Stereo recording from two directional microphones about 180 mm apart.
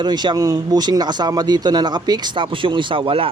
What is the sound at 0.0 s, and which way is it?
A man's voice, 25° right (ahead or behind).